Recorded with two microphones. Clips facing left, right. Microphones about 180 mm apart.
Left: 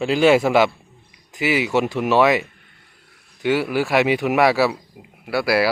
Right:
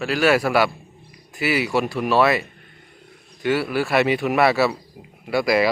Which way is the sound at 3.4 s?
15° left (ahead or behind).